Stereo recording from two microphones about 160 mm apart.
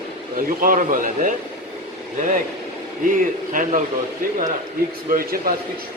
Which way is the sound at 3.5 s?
55° right (ahead or behind).